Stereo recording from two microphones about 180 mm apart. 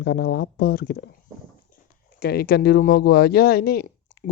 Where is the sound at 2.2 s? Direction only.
60° left (ahead or behind).